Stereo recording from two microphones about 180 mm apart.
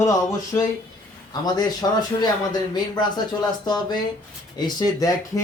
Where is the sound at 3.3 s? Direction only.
25° left (ahead or behind).